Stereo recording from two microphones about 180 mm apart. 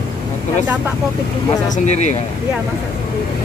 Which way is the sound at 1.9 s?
40° left (ahead or behind).